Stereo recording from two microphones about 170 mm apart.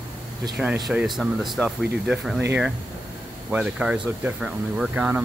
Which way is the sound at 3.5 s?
5° right (ahead or behind).